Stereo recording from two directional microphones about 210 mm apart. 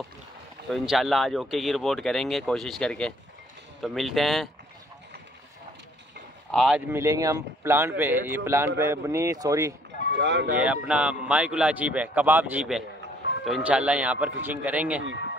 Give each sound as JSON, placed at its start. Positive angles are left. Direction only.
{"t": 0.7, "sound": "speech", "side_deg": 0}
{"t": 6.5, "sound": "speech", "side_deg": 0}
{"t": 6.9, "sound": "speech", "side_deg": -15}
{"t": 10.1, "sound": "speech", "side_deg": -60}
{"t": 10.6, "sound": "speech", "side_deg": -5}